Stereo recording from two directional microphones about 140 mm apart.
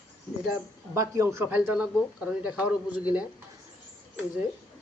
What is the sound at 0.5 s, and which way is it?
Speech, 25° right (ahead or behind).